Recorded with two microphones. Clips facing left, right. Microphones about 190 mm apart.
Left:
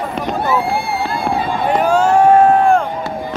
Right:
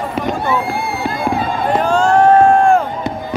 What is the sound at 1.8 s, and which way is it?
Run, 10° left (ahead or behind).